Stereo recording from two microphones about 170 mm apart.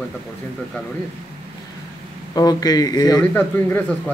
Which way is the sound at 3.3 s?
10° left (ahead or behind).